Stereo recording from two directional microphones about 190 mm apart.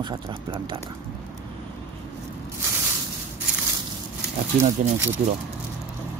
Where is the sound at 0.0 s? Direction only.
25° right (ahead or behind).